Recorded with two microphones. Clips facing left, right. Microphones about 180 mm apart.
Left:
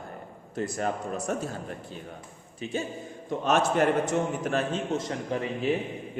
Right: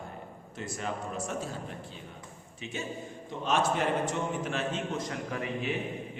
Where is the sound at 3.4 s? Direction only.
45° left (ahead or behind); by 5.5 s 30° left (ahead or behind).